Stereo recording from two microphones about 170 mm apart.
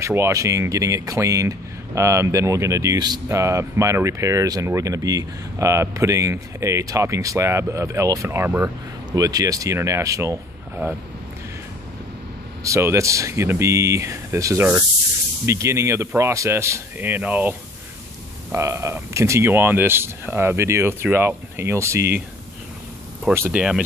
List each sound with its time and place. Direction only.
0.0 s speech: 15° right (ahead or behind)
12.6 s speech: 15° right (ahead or behind)
23.3 s speech: 15° right (ahead or behind)